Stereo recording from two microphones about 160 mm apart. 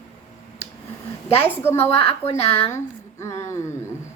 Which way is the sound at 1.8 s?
40° left (ahead or behind).